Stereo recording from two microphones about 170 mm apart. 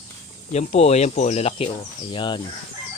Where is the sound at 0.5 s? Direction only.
40° left (ahead or behind).